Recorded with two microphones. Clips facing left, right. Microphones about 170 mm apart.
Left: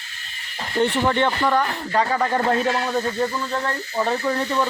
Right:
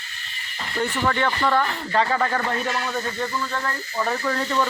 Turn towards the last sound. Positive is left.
turn(degrees=25)  # may be behind; listen again after turning